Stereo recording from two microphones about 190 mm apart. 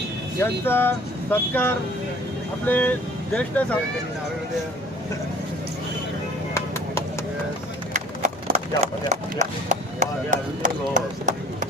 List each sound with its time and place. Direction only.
0.3 s speech: 10° left (ahead or behind)
6.5 s music: 15° left (ahead or behind)
8.5 s speech: 35° right (ahead or behind)